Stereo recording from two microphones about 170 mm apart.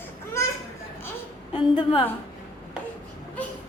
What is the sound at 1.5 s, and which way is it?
Speech, 25° left (ahead or behind).